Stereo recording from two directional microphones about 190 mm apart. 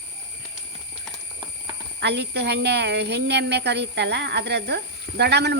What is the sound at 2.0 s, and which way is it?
Speech, 60° right (ahead or behind).